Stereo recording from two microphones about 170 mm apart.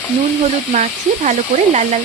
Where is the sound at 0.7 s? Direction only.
45° right (ahead or behind).